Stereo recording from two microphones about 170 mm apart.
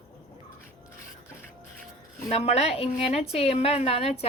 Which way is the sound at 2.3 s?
35° left (ahead or behind).